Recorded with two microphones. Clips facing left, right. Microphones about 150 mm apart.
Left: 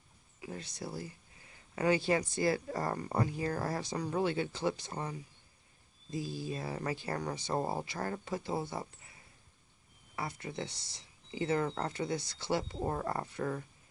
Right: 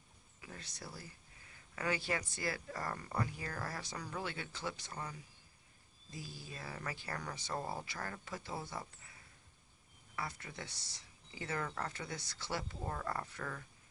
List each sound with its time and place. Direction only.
0.4 s speech: 20° left (ahead or behind)
6.1 s speech: 25° left (ahead or behind)
10.1 s speech: 25° left (ahead or behind)